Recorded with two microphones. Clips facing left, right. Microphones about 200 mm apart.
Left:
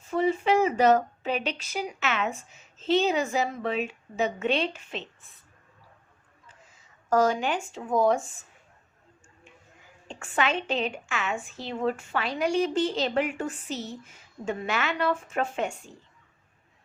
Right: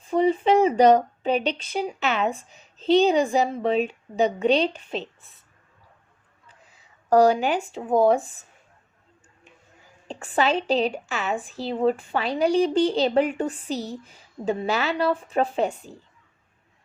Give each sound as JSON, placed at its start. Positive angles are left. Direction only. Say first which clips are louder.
{"t": 0.1, "sound": "a sound", "louder": "right 4 dB", "side_deg": -35}
{"t": 0.4, "sound": "a woman's voice", "louder": "right 5 dB", "side_deg": -30}
{"t": 7.1, "sound": "a woman's voice", "louder": "right 6 dB", "side_deg": -35}
{"t": 10.1, "sound": "a woman's voice", "louder": "right 5 dB", "side_deg": -35}